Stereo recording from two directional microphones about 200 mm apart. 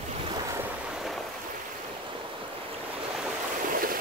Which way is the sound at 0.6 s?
Centre (ahead or behind).